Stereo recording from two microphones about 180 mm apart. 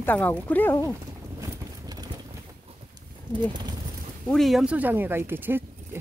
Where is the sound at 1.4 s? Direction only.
20° right (ahead or behind).